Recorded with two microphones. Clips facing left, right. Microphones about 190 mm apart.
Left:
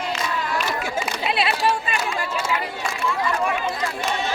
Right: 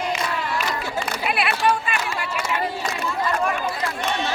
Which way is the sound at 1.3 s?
25° left (ahead or behind).